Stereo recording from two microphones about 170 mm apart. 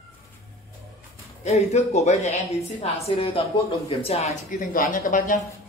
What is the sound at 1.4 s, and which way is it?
A woman's voice, 40° left (ahead or behind).